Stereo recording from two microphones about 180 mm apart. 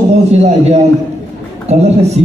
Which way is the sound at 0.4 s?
35° right (ahead or behind).